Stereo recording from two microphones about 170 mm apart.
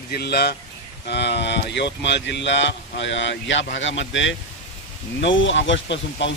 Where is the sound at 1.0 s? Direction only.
85° left.